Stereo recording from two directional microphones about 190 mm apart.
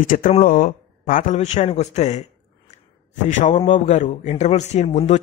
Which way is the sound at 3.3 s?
40° left (ahead or behind).